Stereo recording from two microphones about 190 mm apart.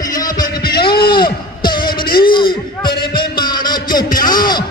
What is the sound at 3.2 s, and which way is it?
Music, 25° left (ahead or behind).